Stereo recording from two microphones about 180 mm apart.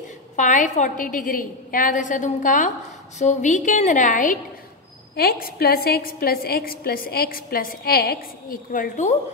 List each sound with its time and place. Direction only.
0.4 s a woman's voice: 45° left (ahead or behind)
5.1 s a woman's voice: 55° left (ahead or behind)